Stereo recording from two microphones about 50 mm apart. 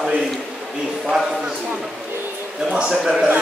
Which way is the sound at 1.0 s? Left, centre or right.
Centre.